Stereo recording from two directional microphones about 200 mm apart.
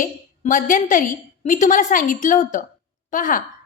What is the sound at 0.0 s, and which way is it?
A woman's voice, 40° left (ahead or behind).